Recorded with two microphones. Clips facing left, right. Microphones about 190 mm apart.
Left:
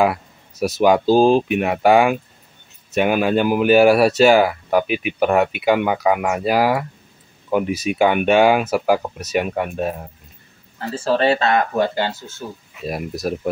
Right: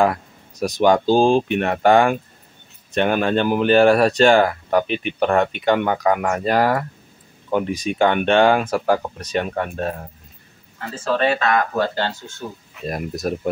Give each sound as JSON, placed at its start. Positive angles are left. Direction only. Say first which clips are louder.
{"t": 0.0, "sound": "speech", "louder": "even", "side_deg": 5}
{"t": 10.8, "sound": "speech", "louder": "left 2 dB", "side_deg": 30}